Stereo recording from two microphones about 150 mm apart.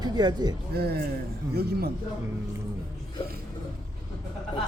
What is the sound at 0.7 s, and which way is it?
Speech, 90° right.